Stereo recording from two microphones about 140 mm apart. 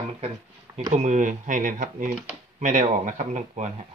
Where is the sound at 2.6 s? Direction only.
60° right (ahead or behind).